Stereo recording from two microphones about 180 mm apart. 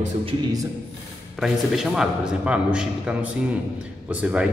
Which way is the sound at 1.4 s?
Centre (ahead or behind).